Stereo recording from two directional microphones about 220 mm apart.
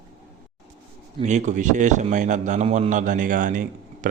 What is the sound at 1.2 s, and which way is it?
A man's voice, 30° right (ahead or behind).